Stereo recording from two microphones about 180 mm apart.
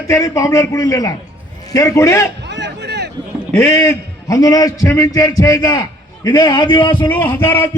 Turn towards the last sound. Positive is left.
turn(degrees=10)  # may be behind; listen again after turning